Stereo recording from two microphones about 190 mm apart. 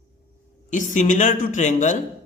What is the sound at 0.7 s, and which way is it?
A man's voice, 40° left (ahead or behind).